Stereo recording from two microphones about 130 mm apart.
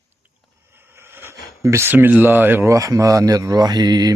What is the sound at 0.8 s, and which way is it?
Speech, 15° right (ahead or behind).